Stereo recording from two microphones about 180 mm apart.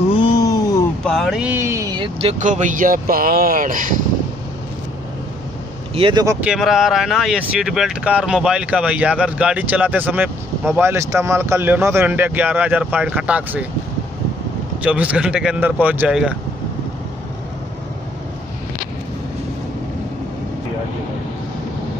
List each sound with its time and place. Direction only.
0.1 s a sound: 25° left (ahead or behind)
1.0 s a sound: centre (ahead or behind); by 2.0 s 20° right (ahead or behind)
2.1 s speech: 40° right (ahead or behind)
5.9 s speech: 30° right (ahead or behind)
6.2 s speech: 5° right (ahead or behind)
14.8 s speech: 5° right (ahead or behind)